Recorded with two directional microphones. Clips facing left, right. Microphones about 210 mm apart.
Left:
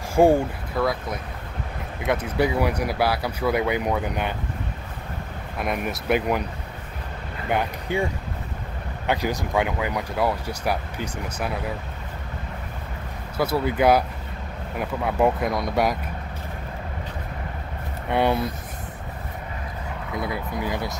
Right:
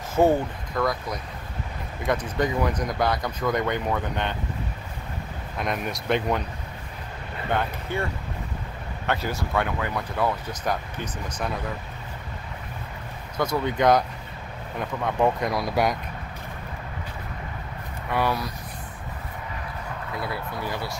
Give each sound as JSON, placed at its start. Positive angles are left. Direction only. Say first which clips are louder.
{"t": 0.1, "sound": "speech", "louder": "left 3 dB", "side_deg": 10}
{"t": 5.6, "sound": "speech", "louder": "left 2 dB", "side_deg": 5}
{"t": 7.5, "sound": "speech", "louder": "left 3 dB", "side_deg": 15}
{"t": 13.4, "sound": "speech", "louder": "left 2 dB", "side_deg": 5}
{"t": 18.1, "sound": "speech", "louder": "left 4 dB", "side_deg": 25}
{"t": 20.2, "sound": "speech", "louder": "left 4 dB", "side_deg": 15}